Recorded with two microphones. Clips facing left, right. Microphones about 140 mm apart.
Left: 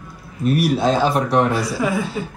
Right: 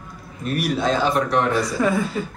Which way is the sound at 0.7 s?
35° left (ahead or behind).